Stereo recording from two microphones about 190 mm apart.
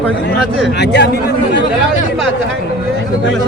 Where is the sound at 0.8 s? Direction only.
65° left (ahead or behind).